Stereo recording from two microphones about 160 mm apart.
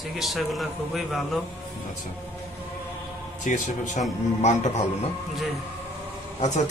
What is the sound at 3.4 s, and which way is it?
Speech, 50° left (ahead or behind).